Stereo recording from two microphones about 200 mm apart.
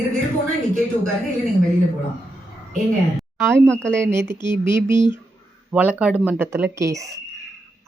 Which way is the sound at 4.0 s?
15° right (ahead or behind).